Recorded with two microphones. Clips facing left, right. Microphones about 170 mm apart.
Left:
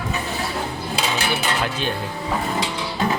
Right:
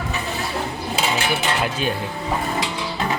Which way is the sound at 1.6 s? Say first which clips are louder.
Right 1 dB; 5° right (ahead or behind).